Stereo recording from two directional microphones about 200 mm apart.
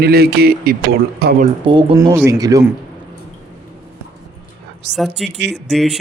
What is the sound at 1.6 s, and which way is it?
Speech, 25° right (ahead or behind).